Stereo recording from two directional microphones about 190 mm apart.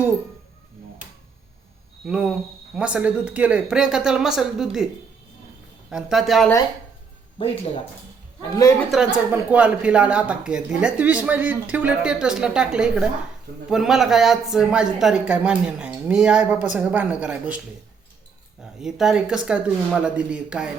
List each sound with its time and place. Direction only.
2.0 s speech: 5° right (ahead or behind)
5.9 s speech: centre (ahead or behind)
7.3 s speech: 30° left (ahead or behind)
8.4 s a man's voice: 20° left (ahead or behind)
8.9 s speech: centre (ahead or behind)
18.6 s speech: 5° right (ahead or behind)